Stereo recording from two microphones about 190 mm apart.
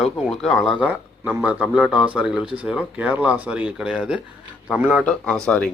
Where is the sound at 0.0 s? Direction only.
Centre (ahead or behind).